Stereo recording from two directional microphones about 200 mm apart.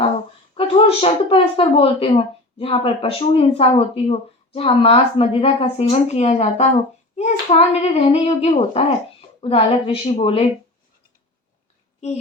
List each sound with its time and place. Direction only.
0.5 s speech: 30° left (ahead or behind)